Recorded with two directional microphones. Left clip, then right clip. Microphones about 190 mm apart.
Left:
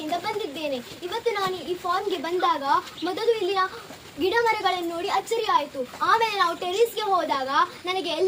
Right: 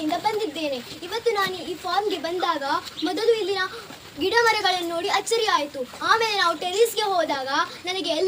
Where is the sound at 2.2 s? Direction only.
5° left (ahead or behind).